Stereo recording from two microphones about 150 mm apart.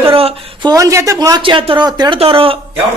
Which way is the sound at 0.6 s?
20° right (ahead or behind).